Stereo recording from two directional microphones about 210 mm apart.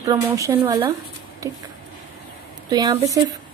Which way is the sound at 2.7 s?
15° right (ahead or behind).